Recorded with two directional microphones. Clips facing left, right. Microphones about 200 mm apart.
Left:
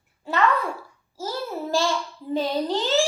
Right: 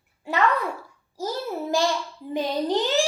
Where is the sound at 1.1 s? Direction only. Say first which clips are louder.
Right 1 dB; 15° right (ahead or behind).